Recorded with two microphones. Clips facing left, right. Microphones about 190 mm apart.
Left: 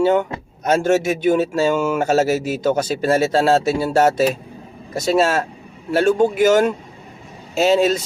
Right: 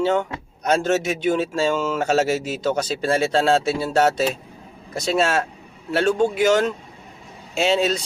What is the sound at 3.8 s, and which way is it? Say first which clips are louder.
Mantra: left 4 dB; 10° left (ahead or behind).